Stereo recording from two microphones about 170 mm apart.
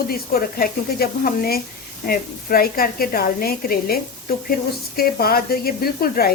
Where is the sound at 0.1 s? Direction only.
60° left (ahead or behind).